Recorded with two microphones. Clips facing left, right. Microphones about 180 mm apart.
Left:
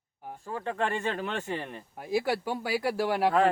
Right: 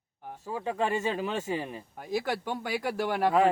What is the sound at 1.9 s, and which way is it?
Speech, 5° left (ahead or behind).